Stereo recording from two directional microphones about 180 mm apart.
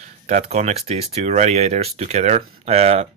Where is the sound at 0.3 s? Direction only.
35° right (ahead or behind).